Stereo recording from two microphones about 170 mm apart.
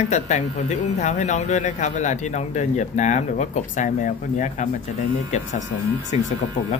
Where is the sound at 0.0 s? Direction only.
45° left (ahead or behind).